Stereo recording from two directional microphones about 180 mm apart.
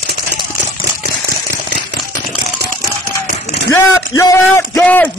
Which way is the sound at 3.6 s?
15° left (ahead or behind).